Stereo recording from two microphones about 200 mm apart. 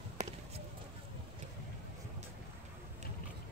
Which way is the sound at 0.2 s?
35° right (ahead or behind).